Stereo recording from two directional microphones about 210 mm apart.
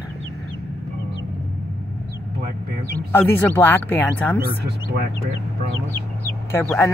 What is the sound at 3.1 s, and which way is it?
Speech, 10° left (ahead or behind).